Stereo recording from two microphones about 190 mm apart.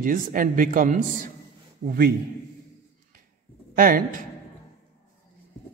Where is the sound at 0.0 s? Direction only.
45° right (ahead or behind).